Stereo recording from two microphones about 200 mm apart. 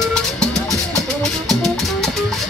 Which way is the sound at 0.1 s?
5° left (ahead or behind).